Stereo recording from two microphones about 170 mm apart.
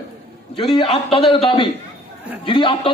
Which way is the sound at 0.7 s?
30° left (ahead or behind).